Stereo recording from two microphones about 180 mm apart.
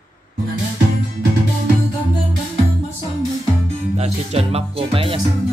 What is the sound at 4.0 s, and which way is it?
Speech, 35° right (ahead or behind).